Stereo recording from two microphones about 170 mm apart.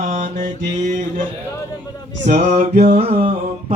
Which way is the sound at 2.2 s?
45° right (ahead or behind).